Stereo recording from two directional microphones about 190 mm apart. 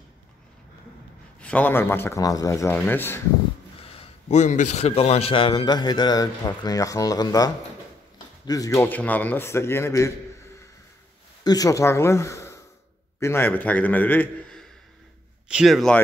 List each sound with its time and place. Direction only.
1.4 s a man's voice: 10° left (ahead or behind)
4.0 s a man's voice: 40° left (ahead or behind); by 10.1 s 15° left (ahead or behind)
11.4 s a man's voice: 20° left (ahead or behind); by 16.0 s centre (ahead or behind)